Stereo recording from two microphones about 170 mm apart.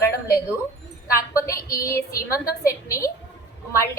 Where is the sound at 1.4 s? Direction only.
20° left (ahead or behind).